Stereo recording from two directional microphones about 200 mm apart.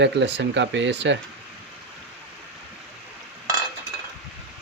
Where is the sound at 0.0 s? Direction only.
60° right (ahead or behind).